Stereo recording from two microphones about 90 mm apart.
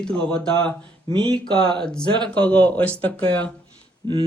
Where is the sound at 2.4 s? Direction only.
15° left (ahead or behind).